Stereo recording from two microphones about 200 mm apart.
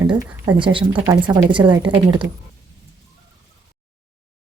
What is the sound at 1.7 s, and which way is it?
Speech, 5° right (ahead or behind).